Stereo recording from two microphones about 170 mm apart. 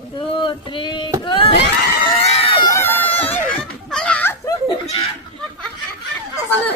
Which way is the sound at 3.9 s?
5° left (ahead or behind).